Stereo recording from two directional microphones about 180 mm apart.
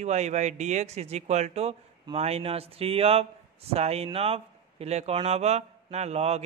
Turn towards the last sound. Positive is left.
turn(degrees=-35)  # may be behind; listen again after turning